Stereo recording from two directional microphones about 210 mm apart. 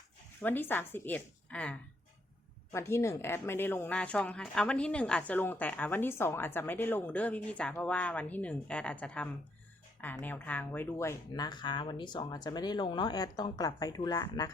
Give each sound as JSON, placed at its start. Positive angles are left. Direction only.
{"t": 0.4, "sound": "speech", "side_deg": 10}